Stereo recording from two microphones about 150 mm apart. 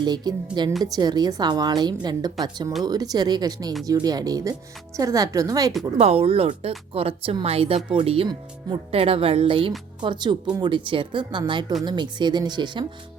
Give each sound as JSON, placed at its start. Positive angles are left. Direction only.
{"t": 0.0, "sound": "a woman's voice", "side_deg": -30}
{"t": 6.0, "sound": "a woman's voice", "side_deg": -40}